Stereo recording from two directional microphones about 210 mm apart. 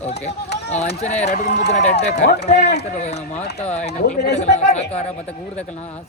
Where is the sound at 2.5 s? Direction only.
50° left (ahead or behind).